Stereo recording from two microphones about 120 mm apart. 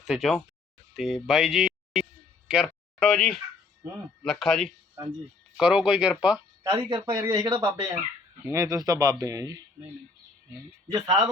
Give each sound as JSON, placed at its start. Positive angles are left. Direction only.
{"t": 0.0, "sound": "speech", "side_deg": -5}
{"t": 3.0, "sound": "speech", "side_deg": 5}
{"t": 6.6, "sound": "a man's voice", "side_deg": -40}